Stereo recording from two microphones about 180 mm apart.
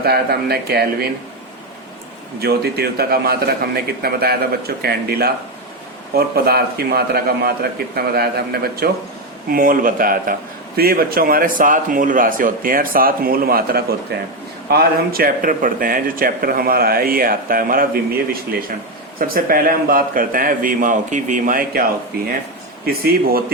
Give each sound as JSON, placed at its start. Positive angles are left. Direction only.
{"t": 0.0, "sound": "a man's voice", "side_deg": -60}
{"t": 2.4, "sound": "a man's voice", "side_deg": -60}
{"t": 19.3, "sound": "speech", "side_deg": -55}
{"t": 22.9, "sound": "a man's voice", "side_deg": -55}